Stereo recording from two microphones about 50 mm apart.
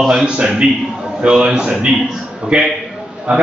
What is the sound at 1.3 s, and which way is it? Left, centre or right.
A man's voice, centre.